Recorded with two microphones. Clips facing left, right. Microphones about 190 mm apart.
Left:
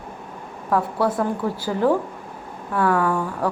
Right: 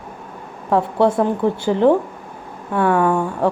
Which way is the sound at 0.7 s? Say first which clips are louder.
Right 5 dB; 25° right (ahead or behind).